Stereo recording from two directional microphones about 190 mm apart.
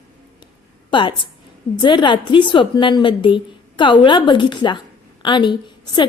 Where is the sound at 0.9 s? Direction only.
25° left (ahead or behind).